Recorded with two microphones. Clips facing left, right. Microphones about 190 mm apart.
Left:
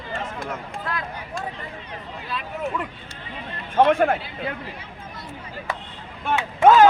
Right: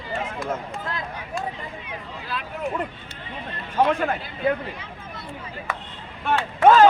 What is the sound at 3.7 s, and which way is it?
Speech, 50° left (ahead or behind).